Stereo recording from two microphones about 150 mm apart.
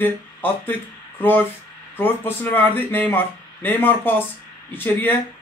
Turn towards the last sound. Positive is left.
turn(degrees=15)  # may be behind; listen again after turning